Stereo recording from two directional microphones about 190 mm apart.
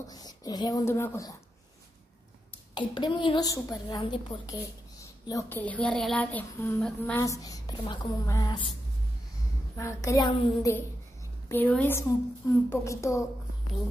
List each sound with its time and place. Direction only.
0.1 s speech: 20° left (ahead or behind)
2.7 s a woman's voice: 25° left (ahead or behind)
9.8 s speech: 15° left (ahead or behind)
11.4 s speech: 10° left (ahead or behind)